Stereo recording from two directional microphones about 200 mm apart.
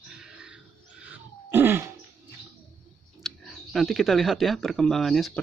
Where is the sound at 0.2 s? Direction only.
5° right (ahead or behind).